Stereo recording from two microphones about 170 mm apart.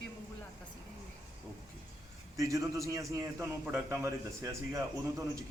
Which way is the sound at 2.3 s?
20° right (ahead or behind).